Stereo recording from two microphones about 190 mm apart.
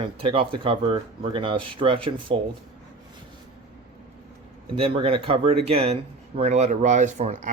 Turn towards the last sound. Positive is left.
turn(degrees=-40)  # may be behind; listen again after turning